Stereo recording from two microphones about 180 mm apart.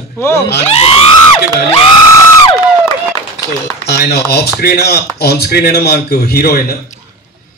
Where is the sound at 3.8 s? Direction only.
65° left (ahead or behind).